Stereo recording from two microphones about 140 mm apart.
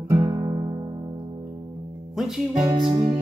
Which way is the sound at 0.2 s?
35° right (ahead or behind).